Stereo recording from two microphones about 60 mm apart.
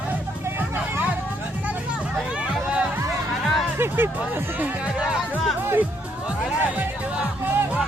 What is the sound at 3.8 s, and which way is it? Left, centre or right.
Speech, right.